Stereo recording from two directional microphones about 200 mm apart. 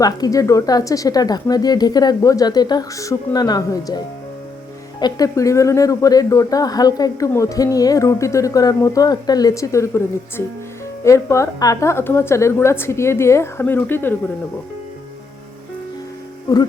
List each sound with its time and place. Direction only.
0.0 s speech: 15° left (ahead or behind)